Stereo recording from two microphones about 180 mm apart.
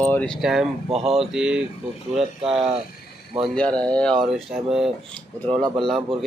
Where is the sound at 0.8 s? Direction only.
35° right (ahead or behind).